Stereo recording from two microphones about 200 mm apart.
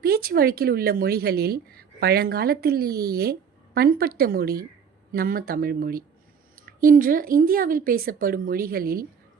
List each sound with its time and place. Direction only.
0.0 s a woman's voice: 50° right (ahead or behind)